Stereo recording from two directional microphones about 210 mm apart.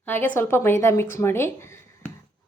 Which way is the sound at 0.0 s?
10° left (ahead or behind).